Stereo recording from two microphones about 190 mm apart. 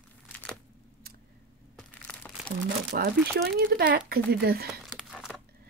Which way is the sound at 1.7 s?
5° left (ahead or behind).